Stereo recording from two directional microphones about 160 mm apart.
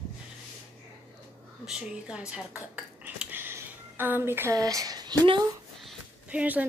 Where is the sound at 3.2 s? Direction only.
15° right (ahead or behind).